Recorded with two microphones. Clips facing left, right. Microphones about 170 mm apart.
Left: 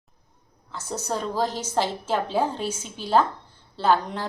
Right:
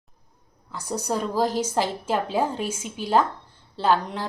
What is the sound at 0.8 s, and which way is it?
A woman's voice, 15° right (ahead or behind).